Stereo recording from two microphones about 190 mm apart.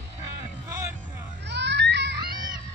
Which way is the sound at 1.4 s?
65° right (ahead or behind).